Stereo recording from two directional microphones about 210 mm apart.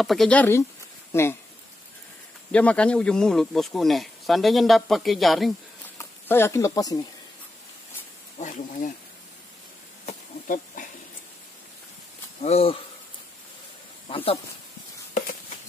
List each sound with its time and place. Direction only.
0.0 s speech: centre (ahead or behind)
2.5 s speech: 5° left (ahead or behind)
5.9 s speech: 10° left (ahead or behind)
8.4 s speech: 35° left (ahead or behind)
10.0 s a sound: 35° left (ahead or behind)
12.4 s speech: 30° left (ahead or behind)
14.0 s speech: 25° left (ahead or behind)